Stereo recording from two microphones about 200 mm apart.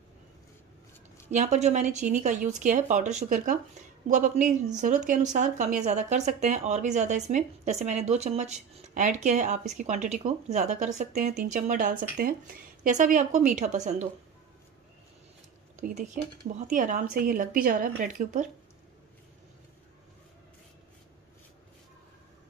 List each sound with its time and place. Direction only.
1.3 s speech: 35° right (ahead or behind)
15.7 s speech: 35° right (ahead or behind)